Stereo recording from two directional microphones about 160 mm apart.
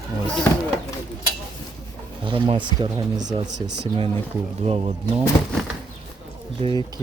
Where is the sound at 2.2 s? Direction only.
35° right (ahead or behind).